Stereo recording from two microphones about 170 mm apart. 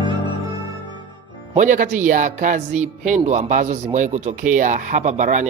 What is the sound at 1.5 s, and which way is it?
Speech, 50° right (ahead or behind).